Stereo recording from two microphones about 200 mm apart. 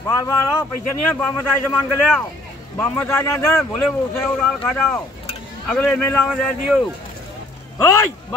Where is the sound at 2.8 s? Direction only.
5° left (ahead or behind).